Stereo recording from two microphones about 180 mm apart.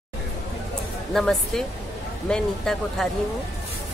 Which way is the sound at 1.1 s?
Centre (ahead or behind).